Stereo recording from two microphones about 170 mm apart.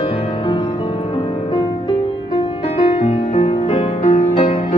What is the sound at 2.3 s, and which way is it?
Music, 35° left (ahead or behind).